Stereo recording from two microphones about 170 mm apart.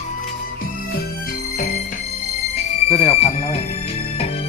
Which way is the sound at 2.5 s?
35° left (ahead or behind).